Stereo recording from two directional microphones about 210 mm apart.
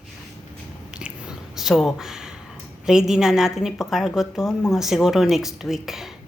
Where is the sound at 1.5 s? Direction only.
Centre (ahead or behind).